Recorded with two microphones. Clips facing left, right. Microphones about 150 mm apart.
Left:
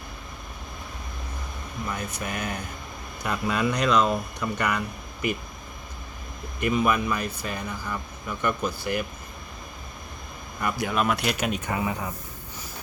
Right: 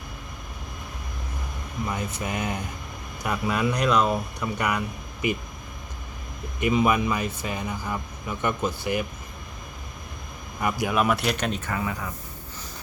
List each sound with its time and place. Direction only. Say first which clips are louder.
1.9 s speech: right 2 dB; 25° right (ahead or behind)
3.2 s speech: even; 5° right (ahead or behind)
6.6 s speech: right 2 dB; 20° right (ahead or behind)
10.6 s speech: right 2 dB; 15° right (ahead or behind)
10.9 s speech: right 2 dB; 5° right (ahead or behind); by 12.1 s 25° left (ahead or behind)